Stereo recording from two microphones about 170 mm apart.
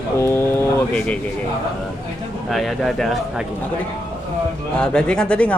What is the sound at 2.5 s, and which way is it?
Speech, centre (ahead or behind).